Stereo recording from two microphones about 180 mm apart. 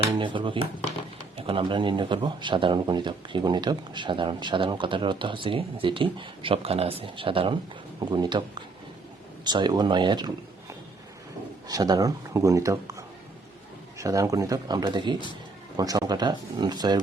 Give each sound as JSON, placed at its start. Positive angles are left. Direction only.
{"t": 0.2, "sound": "a man's voice", "side_deg": -25}
{"t": 11.7, "sound": "a man's voice", "side_deg": -20}